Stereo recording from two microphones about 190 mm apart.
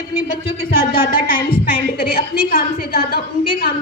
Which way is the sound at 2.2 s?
50° left (ahead or behind).